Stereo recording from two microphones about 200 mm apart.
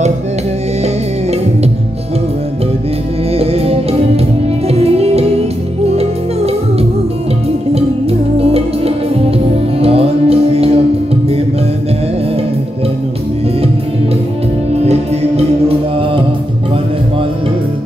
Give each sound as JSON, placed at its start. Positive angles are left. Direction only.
{"t": 3.3, "sound": "music", "side_deg": -30}
{"t": 14.7, "sound": "music", "side_deg": -30}